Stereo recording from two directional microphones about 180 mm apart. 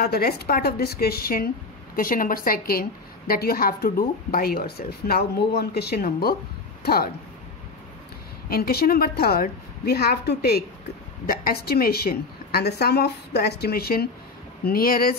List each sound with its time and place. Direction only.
0.0 s a woman's voice: 60° left (ahead or behind)
8.5 s a woman's voice: 60° left (ahead or behind)